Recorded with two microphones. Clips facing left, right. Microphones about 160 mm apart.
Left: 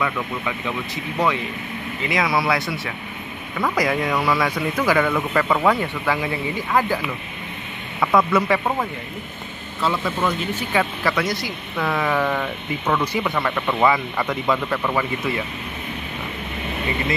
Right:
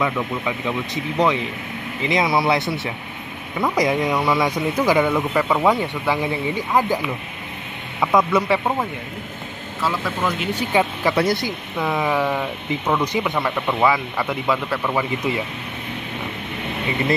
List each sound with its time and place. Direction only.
0.0 s speech: 20° right (ahead or behind)
8.0 s speech: 15° right (ahead or behind)
10.7 s speech: 20° right (ahead or behind)